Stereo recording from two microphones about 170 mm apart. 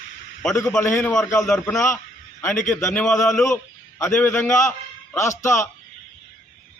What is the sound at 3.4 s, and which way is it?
A man's voice, 15° left (ahead or behind).